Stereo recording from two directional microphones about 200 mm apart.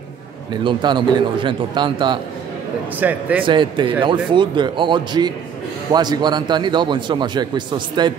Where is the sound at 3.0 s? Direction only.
10° right (ahead or behind).